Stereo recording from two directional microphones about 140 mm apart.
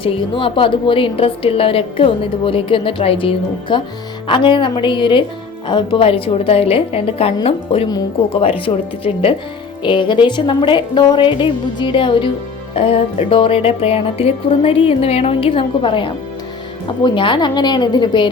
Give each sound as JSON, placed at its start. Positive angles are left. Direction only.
{"t": 0.0, "sound": "a woman's voice", "side_deg": 40}
{"t": 9.8, "sound": "a woman's voice", "side_deg": 35}